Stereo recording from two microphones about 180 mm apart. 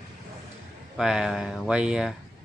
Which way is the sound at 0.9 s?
5° right (ahead or behind).